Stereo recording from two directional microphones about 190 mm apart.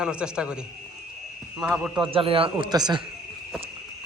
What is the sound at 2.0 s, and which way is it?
Speech, 30° right (ahead or behind).